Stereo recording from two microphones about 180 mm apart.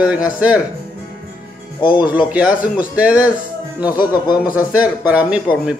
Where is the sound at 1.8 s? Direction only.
25° left (ahead or behind).